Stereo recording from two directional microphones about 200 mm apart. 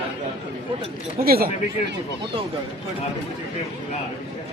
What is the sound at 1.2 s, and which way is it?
Speech, 50° right (ahead or behind).